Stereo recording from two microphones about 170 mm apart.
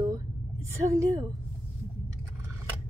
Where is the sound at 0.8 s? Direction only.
20° right (ahead or behind).